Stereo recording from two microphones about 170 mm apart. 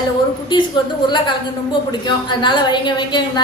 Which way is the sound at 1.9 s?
25° left (ahead or behind).